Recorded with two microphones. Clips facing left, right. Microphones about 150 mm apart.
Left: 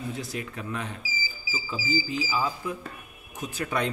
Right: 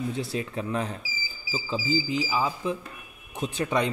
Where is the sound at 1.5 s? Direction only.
20° right (ahead or behind).